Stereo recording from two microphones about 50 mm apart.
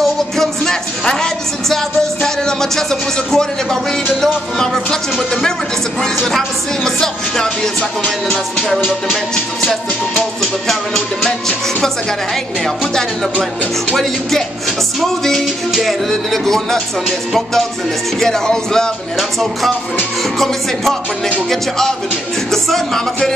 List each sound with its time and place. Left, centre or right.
0.0 s music: centre
2.2 s speech: centre
6.1 s music: centre
8.0 s music: left
10.4 s speech: centre
15.0 s music: centre
18.2 s speech: centre
19.1 s music: centre
21.5 s speech: centre